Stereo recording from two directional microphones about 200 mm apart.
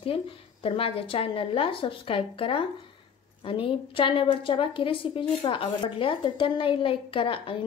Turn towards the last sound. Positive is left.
turn(degrees=25)  # may be behind; listen again after turning